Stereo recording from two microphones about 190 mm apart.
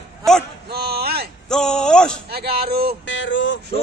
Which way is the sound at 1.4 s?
5° left (ahead or behind).